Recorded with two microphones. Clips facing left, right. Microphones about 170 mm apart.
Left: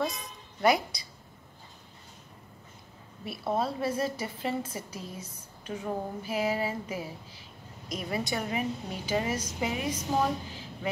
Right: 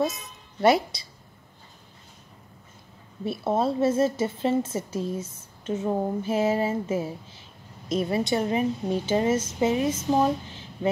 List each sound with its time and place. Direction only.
0.0 s a woman's voice: 25° right (ahead or behind)
3.3 s a woman's voice: 25° right (ahead or behind)